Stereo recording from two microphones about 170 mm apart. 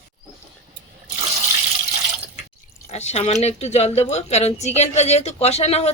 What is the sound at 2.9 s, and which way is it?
Speech, 40° left (ahead or behind).